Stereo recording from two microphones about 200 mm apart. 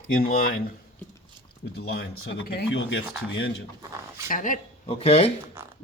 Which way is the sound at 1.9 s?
55° left (ahead or behind).